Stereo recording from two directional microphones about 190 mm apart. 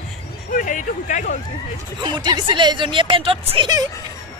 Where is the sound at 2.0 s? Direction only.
25° right (ahead or behind).